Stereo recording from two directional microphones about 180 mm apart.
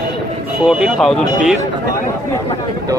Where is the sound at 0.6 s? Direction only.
Centre (ahead or behind).